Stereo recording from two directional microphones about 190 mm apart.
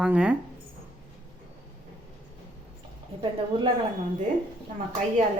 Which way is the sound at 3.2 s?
25° right (ahead or behind).